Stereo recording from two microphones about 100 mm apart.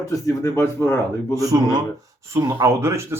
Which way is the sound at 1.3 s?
35° right (ahead or behind).